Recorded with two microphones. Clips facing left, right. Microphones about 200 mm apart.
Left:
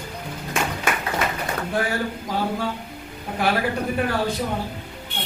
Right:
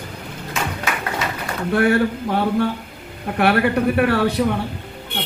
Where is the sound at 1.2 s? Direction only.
55° left (ahead or behind).